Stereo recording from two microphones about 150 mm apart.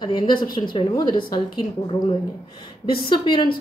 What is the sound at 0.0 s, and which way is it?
A woman's voice, 30° left (ahead or behind).